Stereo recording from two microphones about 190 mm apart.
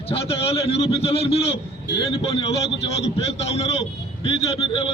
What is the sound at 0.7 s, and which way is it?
A man's voice, 30° left (ahead or behind).